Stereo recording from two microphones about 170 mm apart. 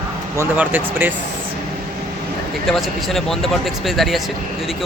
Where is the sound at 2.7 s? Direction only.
Centre (ahead or behind).